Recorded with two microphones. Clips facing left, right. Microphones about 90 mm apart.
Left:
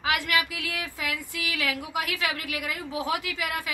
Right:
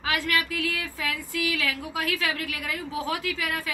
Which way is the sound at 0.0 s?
15° left (ahead or behind).